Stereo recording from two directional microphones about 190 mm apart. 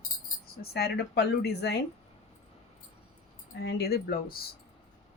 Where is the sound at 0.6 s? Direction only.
55° left (ahead or behind).